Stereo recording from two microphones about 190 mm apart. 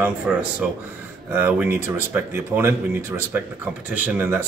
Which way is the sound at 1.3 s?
10° right (ahead or behind).